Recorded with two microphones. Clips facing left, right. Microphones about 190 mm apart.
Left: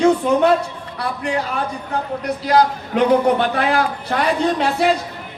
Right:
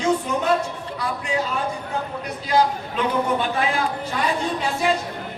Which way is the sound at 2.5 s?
70° left (ahead or behind).